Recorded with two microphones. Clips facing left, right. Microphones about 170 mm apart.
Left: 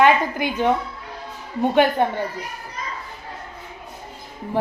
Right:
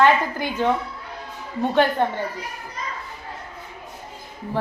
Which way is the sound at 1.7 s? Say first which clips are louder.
Left 2 dB; 15° left (ahead or behind).